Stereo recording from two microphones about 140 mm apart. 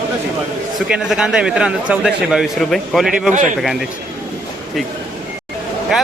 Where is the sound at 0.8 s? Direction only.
5° right (ahead or behind).